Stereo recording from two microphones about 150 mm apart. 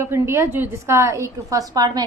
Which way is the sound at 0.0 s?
15° right (ahead or behind).